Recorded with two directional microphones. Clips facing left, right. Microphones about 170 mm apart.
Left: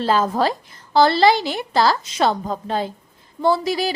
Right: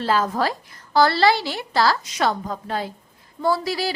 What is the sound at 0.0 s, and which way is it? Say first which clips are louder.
A woman's voice: left 3 dB; 25° left (ahead or behind).